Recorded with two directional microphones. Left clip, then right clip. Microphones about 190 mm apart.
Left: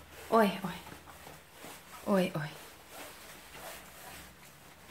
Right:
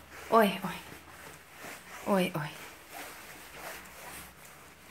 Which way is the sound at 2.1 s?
Centre (ahead or behind).